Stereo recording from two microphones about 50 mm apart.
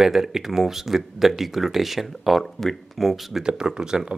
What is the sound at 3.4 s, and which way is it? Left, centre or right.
Speech, centre.